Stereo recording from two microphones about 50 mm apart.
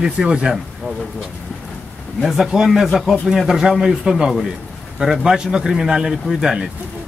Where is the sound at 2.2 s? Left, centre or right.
Centre.